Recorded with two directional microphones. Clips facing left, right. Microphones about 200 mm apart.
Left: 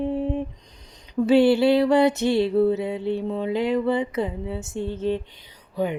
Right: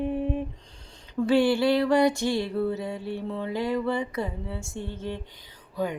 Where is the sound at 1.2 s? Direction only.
25° left (ahead or behind).